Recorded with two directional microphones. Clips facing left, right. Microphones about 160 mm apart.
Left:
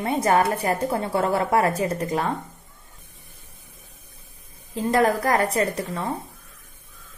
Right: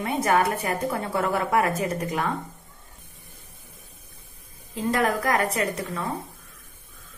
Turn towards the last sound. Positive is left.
turn(degrees=30)  # may be behind; listen again after turning